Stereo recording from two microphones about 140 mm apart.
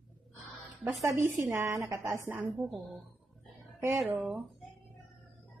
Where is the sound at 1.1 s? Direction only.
20° right (ahead or behind).